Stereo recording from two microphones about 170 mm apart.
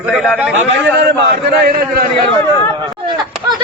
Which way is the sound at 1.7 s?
60° right (ahead or behind).